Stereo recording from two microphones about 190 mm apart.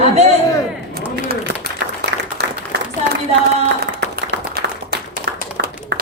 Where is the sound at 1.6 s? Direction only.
60° right (ahead or behind).